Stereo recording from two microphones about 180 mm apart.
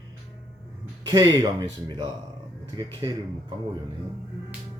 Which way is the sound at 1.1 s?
20° right (ahead or behind).